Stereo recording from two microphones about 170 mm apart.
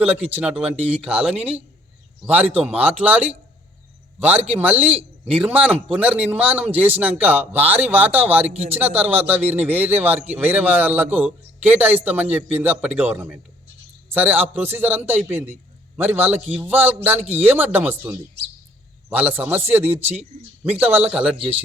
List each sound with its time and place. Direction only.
0.0 s a man's voice: 10° right (ahead or behind)
8.4 s a man's voice: 40° right (ahead or behind)
9.0 s a man's voice: 10° right (ahead or behind)